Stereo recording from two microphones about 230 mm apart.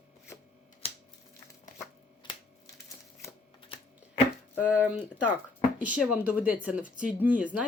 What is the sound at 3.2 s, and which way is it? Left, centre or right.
Typewriter, left.